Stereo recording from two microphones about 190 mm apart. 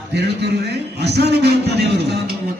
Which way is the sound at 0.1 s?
60° right (ahead or behind).